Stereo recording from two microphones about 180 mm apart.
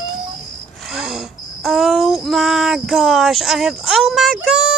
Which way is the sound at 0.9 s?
Centre (ahead or behind).